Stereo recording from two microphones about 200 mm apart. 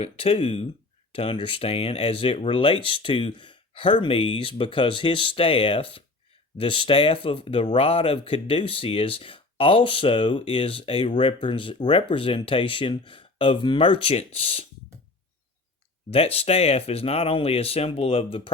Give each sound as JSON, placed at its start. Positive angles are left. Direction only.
{"t": 0.0, "sound": "speech", "side_deg": 30}
{"t": 16.0, "sound": "speech", "side_deg": 30}